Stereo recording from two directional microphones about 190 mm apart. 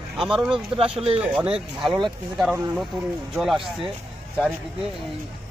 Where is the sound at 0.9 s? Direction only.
30° right (ahead or behind).